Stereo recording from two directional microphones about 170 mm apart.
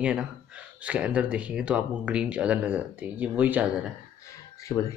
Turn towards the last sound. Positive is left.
turn(degrees=15)  # may be behind; listen again after turning